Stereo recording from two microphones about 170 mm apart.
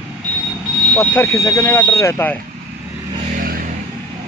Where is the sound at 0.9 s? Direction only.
15° left (ahead or behind).